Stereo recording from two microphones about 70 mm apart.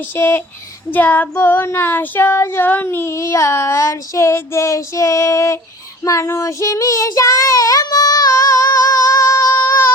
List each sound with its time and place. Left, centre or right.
0.1 s child singing: left
0.9 s child singing: left
2.6 s child singing: left